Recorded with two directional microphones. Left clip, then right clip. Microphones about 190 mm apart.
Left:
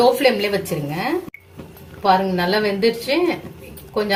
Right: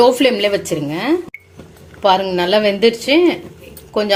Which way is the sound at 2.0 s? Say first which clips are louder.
Right 3 dB; 45° right (ahead or behind).